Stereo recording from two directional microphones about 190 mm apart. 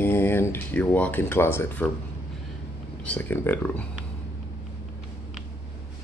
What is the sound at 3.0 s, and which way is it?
Speech, 10° left (ahead or behind).